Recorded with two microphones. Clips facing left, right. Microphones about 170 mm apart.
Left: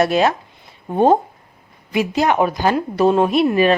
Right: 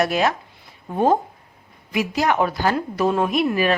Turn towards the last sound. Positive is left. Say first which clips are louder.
# left 5 dB
turn(degrees=25)  # may be behind; listen again after turning